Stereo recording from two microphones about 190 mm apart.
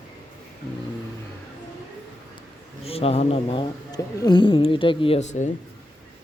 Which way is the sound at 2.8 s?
30° left (ahead or behind).